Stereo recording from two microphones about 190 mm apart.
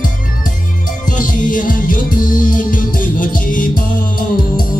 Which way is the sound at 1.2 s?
45° left (ahead or behind).